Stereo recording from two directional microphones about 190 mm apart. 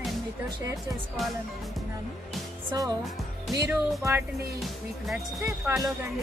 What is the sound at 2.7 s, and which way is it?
Speech, 20° right (ahead or behind).